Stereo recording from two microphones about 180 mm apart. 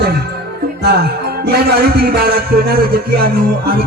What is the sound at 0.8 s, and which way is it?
Music, 65° right (ahead or behind).